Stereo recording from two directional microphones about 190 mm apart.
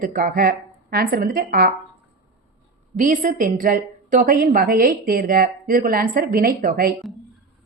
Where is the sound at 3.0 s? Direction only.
45° right (ahead or behind).